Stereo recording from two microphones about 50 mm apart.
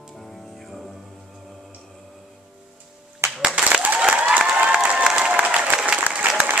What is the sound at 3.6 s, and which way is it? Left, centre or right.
Applause, right.